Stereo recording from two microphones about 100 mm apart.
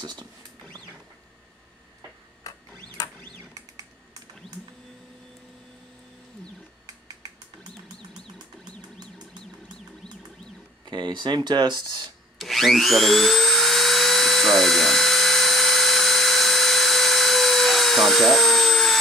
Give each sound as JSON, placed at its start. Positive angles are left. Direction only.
{"t": 0.0, "sound": "speech", "side_deg": -45}
{"t": 2.4, "sound": "printer", "side_deg": 35}
{"t": 10.9, "sound": "speech", "side_deg": -50}
{"t": 12.4, "sound": "a sound", "side_deg": 0}